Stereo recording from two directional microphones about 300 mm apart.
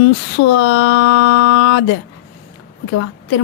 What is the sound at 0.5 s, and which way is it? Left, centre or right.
Speech, left.